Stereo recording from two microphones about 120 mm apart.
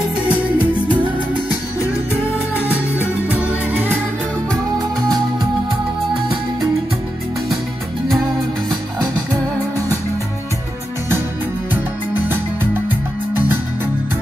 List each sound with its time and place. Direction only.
0.2 s music: 10° right (ahead or behind)
2.5 s music: 15° right (ahead or behind)
11.7 s music: 15° right (ahead or behind)